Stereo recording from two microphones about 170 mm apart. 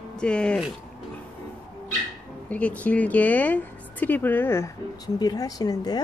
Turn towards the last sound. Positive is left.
turn(degrees=25)  # may be behind; listen again after turning